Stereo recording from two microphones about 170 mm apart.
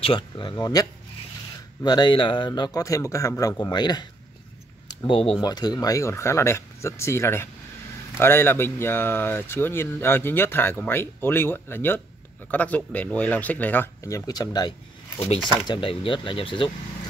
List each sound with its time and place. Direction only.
0.0 s speech: 30° left (ahead or behind)
4.8 s a sound: 30° left (ahead or behind)
5.4 s speech: 25° left (ahead or behind)
15.1 s speech: 35° left (ahead or behind)